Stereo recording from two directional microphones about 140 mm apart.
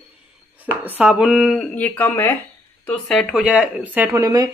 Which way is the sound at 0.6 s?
10° right (ahead or behind).